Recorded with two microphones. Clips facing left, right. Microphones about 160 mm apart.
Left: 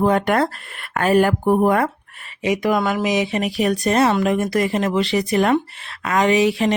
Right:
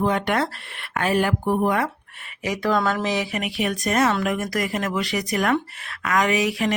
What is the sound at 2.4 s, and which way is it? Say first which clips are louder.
Speech: left 3 dB; 20° left (ahead or behind).